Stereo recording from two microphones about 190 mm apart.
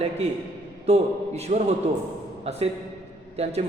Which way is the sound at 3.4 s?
35° right (ahead or behind).